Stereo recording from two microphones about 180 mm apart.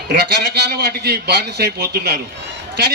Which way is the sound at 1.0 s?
65° right (ahead or behind).